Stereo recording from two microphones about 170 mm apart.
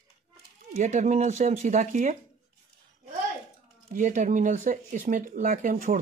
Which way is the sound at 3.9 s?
45° right (ahead or behind).